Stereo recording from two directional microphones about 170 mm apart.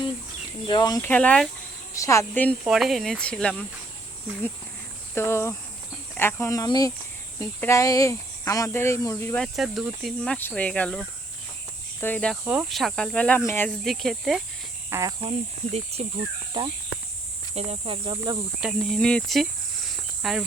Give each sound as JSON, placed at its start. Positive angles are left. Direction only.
{"t": 0.7, "sound": "speech", "side_deg": 25}
{"t": 2.0, "sound": "speech", "side_deg": 15}
{"t": 2.6, "sound": "speech", "side_deg": 0}
{"t": 5.1, "sound": "speech", "side_deg": 15}
{"t": 9.4, "sound": "speech", "side_deg": 0}
{"t": 10.3, "sound": "speech", "side_deg": 10}
{"t": 12.5, "sound": "speech", "side_deg": -5}
{"t": 13.7, "sound": "speech", "side_deg": 0}
{"t": 14.8, "sound": "cricket", "side_deg": -15}
{"t": 15.2, "sound": "speech", "side_deg": -35}
{"t": 16.6, "sound": "speech", "side_deg": -25}
{"t": 18.6, "sound": "speech", "side_deg": 0}
{"t": 19.9, "sound": "cricket", "side_deg": 0}